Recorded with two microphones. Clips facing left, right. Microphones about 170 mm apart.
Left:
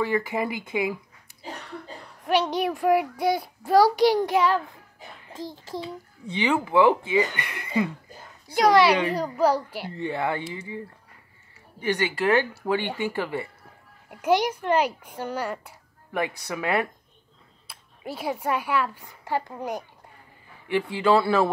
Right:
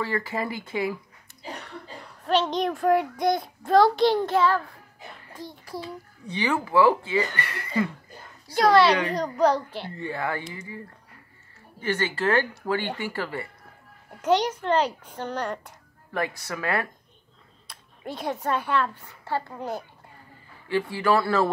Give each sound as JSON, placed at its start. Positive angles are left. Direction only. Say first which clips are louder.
{"t": 0.0, "sound": "a child's voice", "louder": "left 3 dB", "side_deg": 15}
{"t": 2.2, "sound": "a child's voice", "louder": "even", "side_deg": 10}
{"t": 9.9, "sound": "speech", "louder": "left 3 dB", "side_deg": 20}
{"t": 11.8, "sound": "a child's voice", "louder": "left 1 dB", "side_deg": 15}
{"t": 17.6, "sound": "speech", "louder": "even", "side_deg": 5}